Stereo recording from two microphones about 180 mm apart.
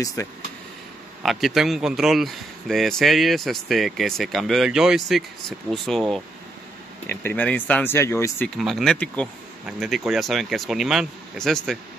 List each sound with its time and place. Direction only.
0.0 s speech: 20° left (ahead or behind)
1.2 s a man's voice: centre (ahead or behind)
8.5 s a man's voice: centre (ahead or behind)